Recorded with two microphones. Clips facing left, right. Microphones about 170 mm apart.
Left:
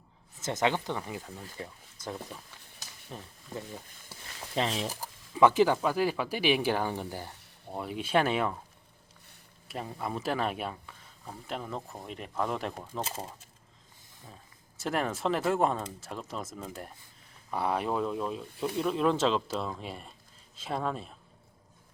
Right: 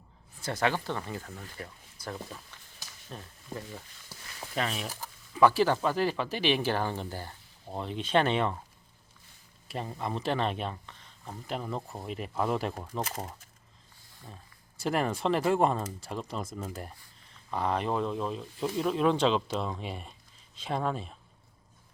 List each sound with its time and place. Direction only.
0.3 s speech: 20° left (ahead or behind)
2.7 s a sound: 15° left (ahead or behind)
5.3 s speech: 20° left (ahead or behind)
9.6 s speech: centre (ahead or behind)
14.8 s speech: centre (ahead or behind)
17.5 s speech: 10° left (ahead or behind)